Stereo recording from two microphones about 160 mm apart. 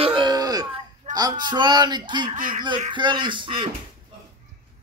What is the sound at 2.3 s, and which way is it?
Speech, 55° right (ahead or behind).